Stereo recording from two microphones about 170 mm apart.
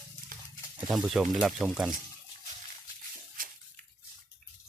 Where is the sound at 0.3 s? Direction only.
55° right (ahead or behind).